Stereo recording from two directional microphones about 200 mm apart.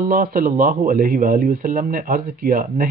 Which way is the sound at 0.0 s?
45° right (ahead or behind).